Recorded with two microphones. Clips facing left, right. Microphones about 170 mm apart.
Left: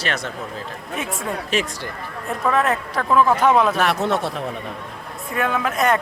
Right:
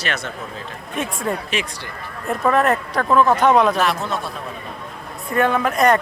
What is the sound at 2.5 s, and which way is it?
Speech, centre (ahead or behind).